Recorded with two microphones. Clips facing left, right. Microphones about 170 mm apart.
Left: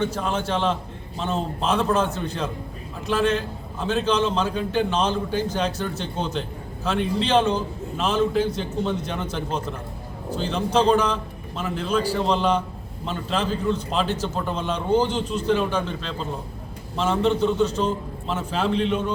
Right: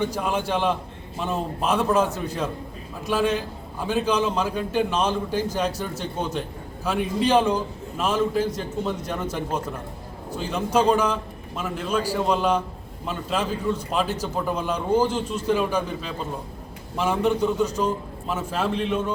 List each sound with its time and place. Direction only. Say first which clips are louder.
0.0 s a man's voice: even; 10° right (ahead or behind)